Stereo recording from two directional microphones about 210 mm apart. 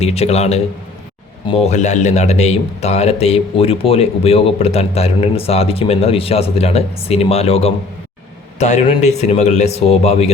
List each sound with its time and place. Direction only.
0.0 s speech: 30° left (ahead or behind)